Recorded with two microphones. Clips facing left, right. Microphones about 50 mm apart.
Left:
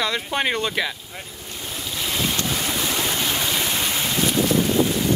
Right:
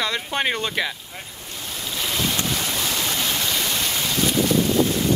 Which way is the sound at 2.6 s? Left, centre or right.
Centre.